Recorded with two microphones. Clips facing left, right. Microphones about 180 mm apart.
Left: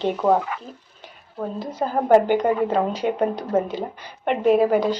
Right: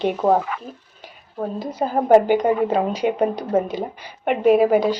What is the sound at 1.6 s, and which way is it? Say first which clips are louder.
Speech: right 2 dB; 15° right (ahead or behind).